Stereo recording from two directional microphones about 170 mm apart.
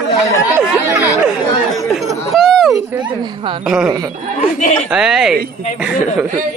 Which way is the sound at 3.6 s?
5° right (ahead or behind).